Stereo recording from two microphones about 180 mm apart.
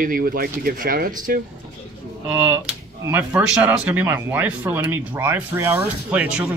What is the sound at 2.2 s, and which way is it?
Speech, 10° right (ahead or behind).